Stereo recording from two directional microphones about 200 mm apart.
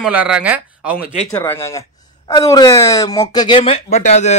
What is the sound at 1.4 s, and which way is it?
Speech, 15° left (ahead or behind).